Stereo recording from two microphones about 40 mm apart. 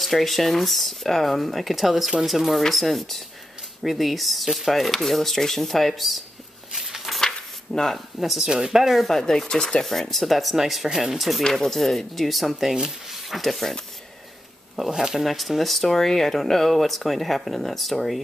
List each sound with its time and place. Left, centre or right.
0.0 s speech: centre
7.2 s a sound: centre
8.2 s speech: centre
9.5 s speech: centre
9.8 s speech: centre
14.8 s speech: centre
15.1 s speech: centre